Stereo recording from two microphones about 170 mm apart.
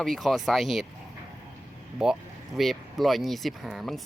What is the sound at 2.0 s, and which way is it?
Speech, 5° right (ahead or behind).